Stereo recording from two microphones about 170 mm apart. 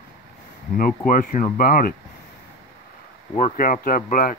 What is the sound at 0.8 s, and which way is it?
Speech, 55° left (ahead or behind).